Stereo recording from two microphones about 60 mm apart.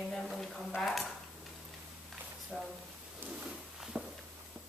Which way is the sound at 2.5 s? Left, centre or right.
Centre.